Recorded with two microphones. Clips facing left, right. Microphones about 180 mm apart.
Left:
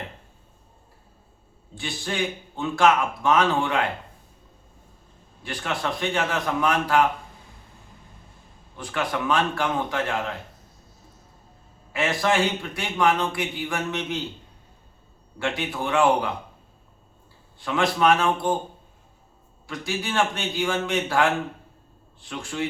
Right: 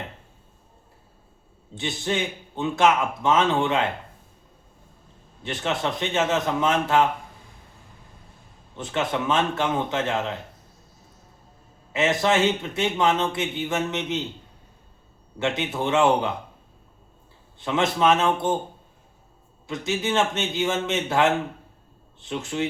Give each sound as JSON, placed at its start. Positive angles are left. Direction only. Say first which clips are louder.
{"t": 1.7, "sound": "speech", "louder": "right 4 dB", "side_deg": -20}
{"t": 5.4, "sound": "speech", "louder": "right 2 dB", "side_deg": -20}
{"t": 8.7, "sound": "speech", "louder": "right 2 dB", "side_deg": -20}
{"t": 11.9, "sound": "speech", "louder": "right 2 dB", "side_deg": -20}
{"t": 15.4, "sound": "speech", "louder": "right 2 dB", "side_deg": -20}
{"t": 17.6, "sound": "speech", "louder": "even", "side_deg": -20}
{"t": 19.6, "sound": "speech", "louder": "right 4 dB", "side_deg": -20}